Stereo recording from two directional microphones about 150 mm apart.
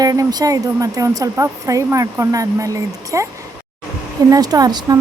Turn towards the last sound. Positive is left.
turn(degrees=-25)  # may be behind; listen again after turning